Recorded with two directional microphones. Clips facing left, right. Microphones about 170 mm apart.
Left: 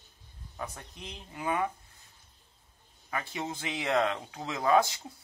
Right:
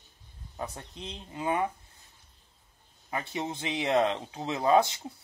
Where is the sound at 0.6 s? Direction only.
25° right (ahead or behind).